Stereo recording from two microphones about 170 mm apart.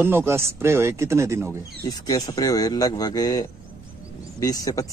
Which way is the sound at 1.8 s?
20° left (ahead or behind).